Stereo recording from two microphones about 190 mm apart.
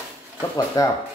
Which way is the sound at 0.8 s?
20° left (ahead or behind).